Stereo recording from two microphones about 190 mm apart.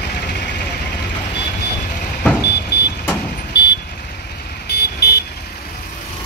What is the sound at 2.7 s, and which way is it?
Vehicle, 60° left (ahead or behind).